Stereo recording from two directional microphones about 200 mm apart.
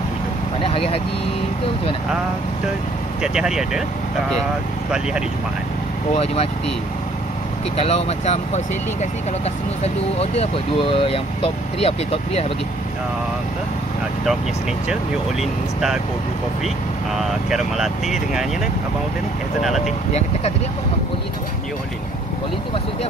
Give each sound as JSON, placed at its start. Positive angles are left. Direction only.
{"t": 0.7, "sound": "vehicle", "side_deg": 30}
{"t": 3.2, "sound": "speech", "side_deg": -5}
{"t": 6.1, "sound": "speech", "side_deg": 30}
{"t": 7.7, "sound": "speech", "side_deg": 30}
{"t": 10.1, "sound": "speech", "side_deg": 30}
{"t": 17.2, "sound": "speech", "side_deg": 0}
{"t": 19.8, "sound": "speech", "side_deg": 35}